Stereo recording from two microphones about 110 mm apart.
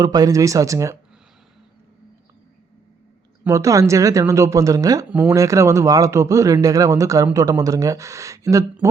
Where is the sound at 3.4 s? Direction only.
30° right (ahead or behind).